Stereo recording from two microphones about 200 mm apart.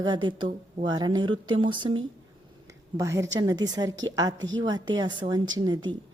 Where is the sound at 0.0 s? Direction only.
20° right (ahead or behind).